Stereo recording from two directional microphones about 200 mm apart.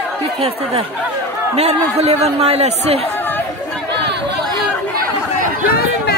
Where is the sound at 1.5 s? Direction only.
30° right (ahead or behind).